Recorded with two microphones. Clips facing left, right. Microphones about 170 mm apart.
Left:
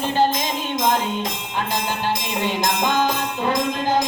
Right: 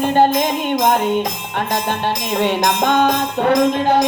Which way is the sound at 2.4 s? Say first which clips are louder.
Right 7 dB; 65° right (ahead or behind).